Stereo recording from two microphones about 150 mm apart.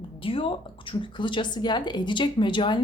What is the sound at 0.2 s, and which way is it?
Speech, 35° left (ahead or behind).